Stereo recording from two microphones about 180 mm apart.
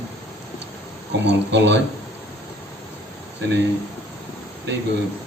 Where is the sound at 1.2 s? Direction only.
75° right (ahead or behind).